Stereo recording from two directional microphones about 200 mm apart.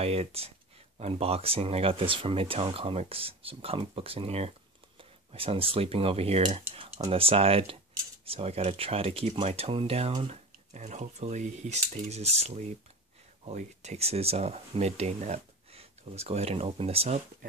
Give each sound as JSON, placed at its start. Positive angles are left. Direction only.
{"t": 0.0, "sound": "speech", "side_deg": -30}